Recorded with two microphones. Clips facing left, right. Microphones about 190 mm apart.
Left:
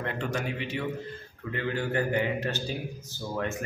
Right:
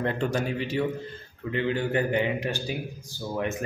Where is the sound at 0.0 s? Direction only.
35° right (ahead or behind).